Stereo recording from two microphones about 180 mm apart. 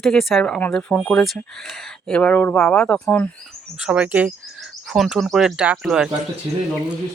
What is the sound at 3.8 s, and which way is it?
Speech, 5° right (ahead or behind).